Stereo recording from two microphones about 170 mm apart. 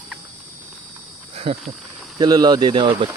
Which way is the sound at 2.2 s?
25° right (ahead or behind).